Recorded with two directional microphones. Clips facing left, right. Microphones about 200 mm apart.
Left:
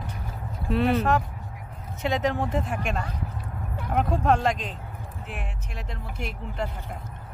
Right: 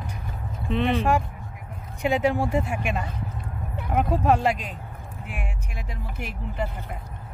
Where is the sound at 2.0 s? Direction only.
10° right (ahead or behind).